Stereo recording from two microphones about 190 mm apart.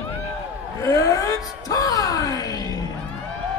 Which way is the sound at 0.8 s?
15° left (ahead or behind).